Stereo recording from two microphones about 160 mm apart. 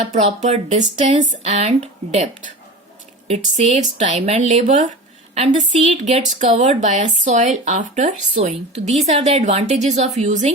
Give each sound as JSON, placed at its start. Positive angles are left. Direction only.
{"t": 0.1, "sound": "a woman's voice", "side_deg": -45}